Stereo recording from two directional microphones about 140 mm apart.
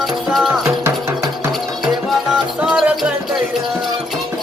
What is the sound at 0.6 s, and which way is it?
Music, 20° right (ahead or behind).